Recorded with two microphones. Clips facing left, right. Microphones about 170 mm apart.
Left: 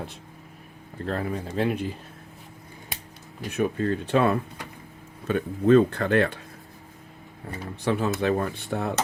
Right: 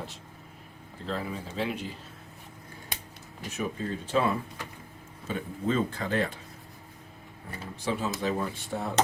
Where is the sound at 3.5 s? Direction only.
60° left (ahead or behind).